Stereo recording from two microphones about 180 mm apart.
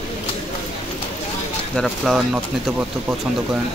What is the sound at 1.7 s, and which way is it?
Speech, centre (ahead or behind).